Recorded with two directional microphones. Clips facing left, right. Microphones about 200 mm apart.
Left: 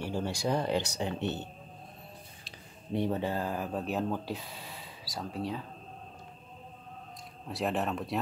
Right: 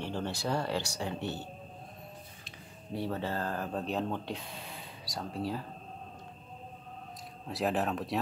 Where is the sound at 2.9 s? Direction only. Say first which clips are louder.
Left 4 dB; 20° left (ahead or behind); by 5.6 s centre (ahead or behind).